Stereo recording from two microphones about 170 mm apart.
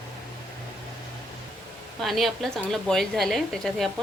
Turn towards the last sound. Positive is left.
turn(degrees=0)  # may be behind; listen again after turning